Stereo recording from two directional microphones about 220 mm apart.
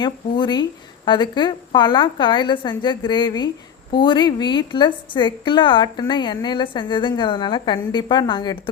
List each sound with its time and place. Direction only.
0.0 s a woman's voice: 20° left (ahead or behind)